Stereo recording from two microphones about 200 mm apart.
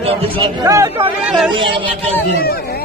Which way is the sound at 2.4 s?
50° left (ahead or behind).